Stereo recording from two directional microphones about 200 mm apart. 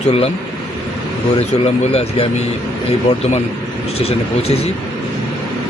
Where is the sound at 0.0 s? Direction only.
35° left (ahead or behind).